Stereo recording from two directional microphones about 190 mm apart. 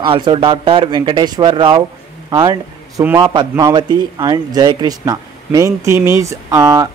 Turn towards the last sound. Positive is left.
turn(degrees=-15)  # may be behind; listen again after turning